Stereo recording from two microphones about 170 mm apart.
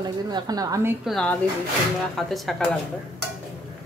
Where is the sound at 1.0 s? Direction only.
5° left (ahead or behind).